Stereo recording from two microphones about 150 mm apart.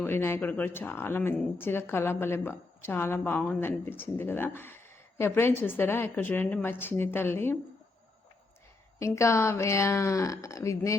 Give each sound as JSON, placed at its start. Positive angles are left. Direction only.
{"t": 0.0, "sound": "a woman's voice", "side_deg": 15}
{"t": 9.0, "sound": "speech", "side_deg": 20}